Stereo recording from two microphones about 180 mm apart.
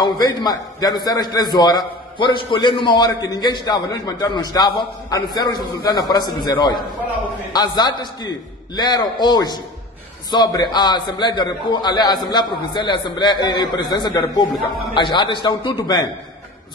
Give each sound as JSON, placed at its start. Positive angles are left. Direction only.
{"t": 0.0, "sound": "a man's voice", "side_deg": 20}